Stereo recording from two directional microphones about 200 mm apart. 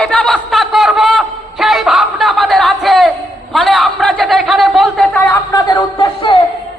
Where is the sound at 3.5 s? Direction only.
Centre (ahead or behind).